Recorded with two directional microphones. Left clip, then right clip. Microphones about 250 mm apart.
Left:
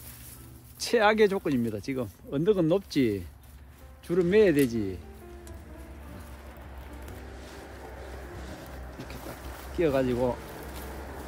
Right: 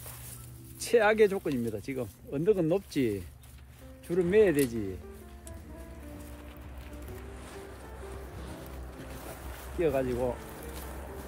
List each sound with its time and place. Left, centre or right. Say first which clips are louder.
0.7 s speech: left 1 dB; left
9.8 s speech: left 3 dB; left